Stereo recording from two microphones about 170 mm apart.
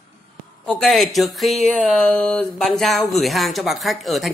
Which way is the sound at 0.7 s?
5° left (ahead or behind).